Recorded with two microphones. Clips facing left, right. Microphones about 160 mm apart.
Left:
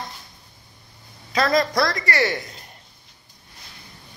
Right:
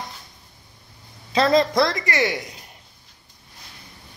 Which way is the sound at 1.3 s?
25° right (ahead or behind).